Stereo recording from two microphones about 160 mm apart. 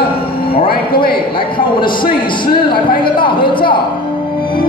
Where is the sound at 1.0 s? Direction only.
30° left (ahead or behind).